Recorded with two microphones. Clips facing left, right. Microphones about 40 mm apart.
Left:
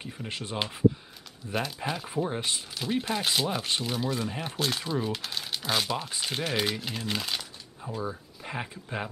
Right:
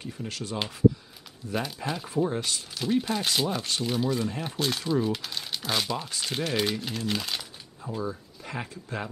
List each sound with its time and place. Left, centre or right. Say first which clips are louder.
0.0 s speech: right 1 dB; left
1.5 s speech: even; centre
2.2 s speech: right 2 dB; left
2.7 s speech: right 4 dB; centre
6.0 s speech: right 1 dB; centre
8.0 s speech: right 1 dB; centre